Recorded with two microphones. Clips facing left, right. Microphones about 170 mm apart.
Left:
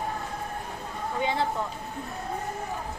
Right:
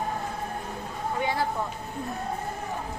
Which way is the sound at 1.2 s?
20° left (ahead or behind).